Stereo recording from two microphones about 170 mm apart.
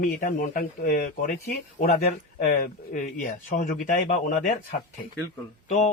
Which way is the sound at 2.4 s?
55° left (ahead or behind).